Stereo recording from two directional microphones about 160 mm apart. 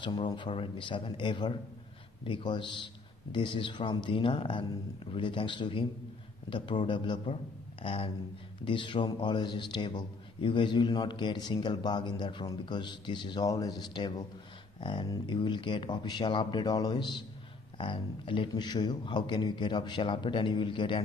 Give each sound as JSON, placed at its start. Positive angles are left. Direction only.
{"t": 0.0, "sound": "a man's voice", "side_deg": 30}